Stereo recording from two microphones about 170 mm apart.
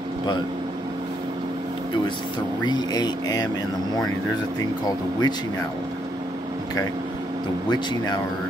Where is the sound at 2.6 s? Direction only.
25° left (ahead or behind).